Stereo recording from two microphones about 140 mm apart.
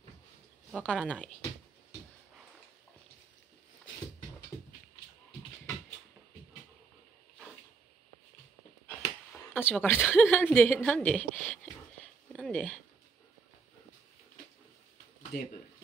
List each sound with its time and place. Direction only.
0.7 s speech: 5° left (ahead or behind)
9.5 s a woman's voice: 15° left (ahead or behind)
12.3 s a sound: 5° left (ahead or behind)